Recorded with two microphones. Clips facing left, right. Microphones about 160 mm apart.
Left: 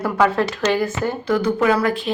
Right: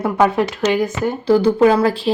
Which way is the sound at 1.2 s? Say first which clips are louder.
Right 6 dB; 30° right (ahead or behind).